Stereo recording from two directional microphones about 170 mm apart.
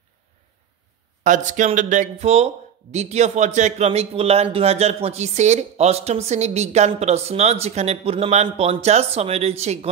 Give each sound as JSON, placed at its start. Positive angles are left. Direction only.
{"t": 1.2, "sound": "speech", "side_deg": -45}